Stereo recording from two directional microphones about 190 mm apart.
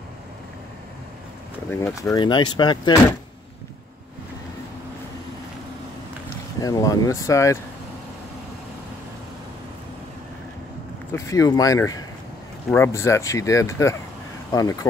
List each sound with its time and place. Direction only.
1.7 s speech: 10° left (ahead or behind)
6.6 s speech: 20° left (ahead or behind)
11.1 s speech: 15° left (ahead or behind)